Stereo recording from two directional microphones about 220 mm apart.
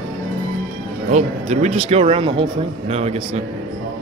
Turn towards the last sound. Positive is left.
turn(degrees=-30)  # may be behind; listen again after turning